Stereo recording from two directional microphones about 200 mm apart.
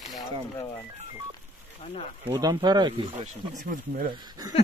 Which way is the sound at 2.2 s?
20° right (ahead or behind).